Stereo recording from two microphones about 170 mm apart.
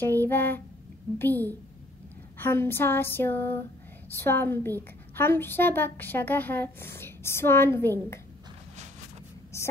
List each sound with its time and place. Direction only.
0.0 s a woman's voice: 10° left (ahead or behind)
9.5 s speech: 15° left (ahead or behind)